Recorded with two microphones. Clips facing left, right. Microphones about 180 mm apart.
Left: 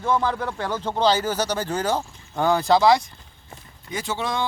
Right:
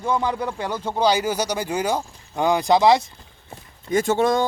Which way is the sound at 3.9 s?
45° right (ahead or behind).